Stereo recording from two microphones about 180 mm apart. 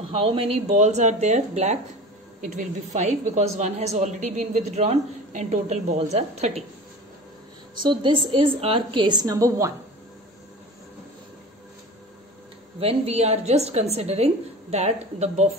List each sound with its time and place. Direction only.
0.1 s a woman's voice: 30° right (ahead or behind)
7.8 s a woman's voice: 25° right (ahead or behind)
12.7 s a woman's voice: 35° right (ahead or behind)